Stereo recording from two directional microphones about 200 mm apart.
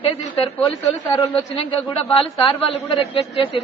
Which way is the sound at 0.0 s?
30° left (ahead or behind).